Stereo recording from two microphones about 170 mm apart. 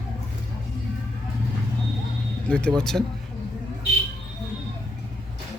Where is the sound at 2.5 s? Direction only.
5° left (ahead or behind).